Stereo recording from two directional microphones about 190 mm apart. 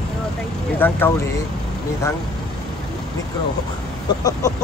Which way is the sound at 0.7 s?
10° left (ahead or behind).